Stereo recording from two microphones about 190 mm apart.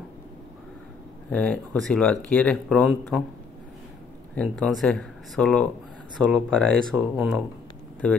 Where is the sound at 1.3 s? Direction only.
10° left (ahead or behind).